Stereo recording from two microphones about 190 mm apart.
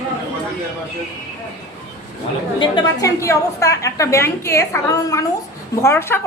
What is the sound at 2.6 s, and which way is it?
A woman's voice, 20° left (ahead or behind).